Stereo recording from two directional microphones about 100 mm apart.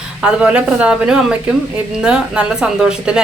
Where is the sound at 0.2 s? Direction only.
10° right (ahead or behind).